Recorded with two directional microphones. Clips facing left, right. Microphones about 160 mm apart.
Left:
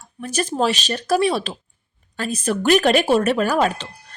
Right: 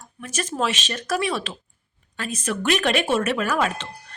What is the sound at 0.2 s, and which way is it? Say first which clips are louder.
A woman's voice: left 5 dB; 35° left (ahead or behind).